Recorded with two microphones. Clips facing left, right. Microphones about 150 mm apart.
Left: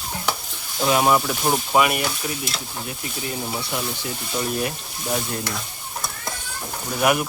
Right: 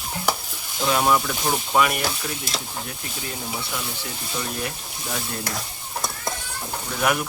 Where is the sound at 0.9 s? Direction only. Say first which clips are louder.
Left 2 dB; 15° left (ahead or behind).